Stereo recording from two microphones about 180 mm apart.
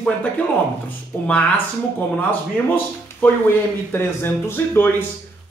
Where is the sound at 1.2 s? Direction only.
10° left (ahead or behind).